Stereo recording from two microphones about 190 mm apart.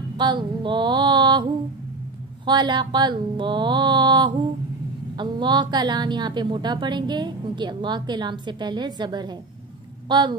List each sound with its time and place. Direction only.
0.2 s mantra: 25° right (ahead or behind)
2.4 s a woman's voice: 25° right (ahead or behind)